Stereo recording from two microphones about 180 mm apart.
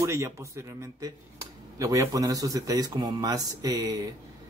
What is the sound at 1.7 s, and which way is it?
A man's voice, 20° right (ahead or behind).